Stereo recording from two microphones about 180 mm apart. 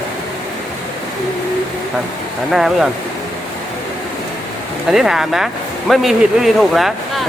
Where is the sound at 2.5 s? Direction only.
Centre (ahead or behind).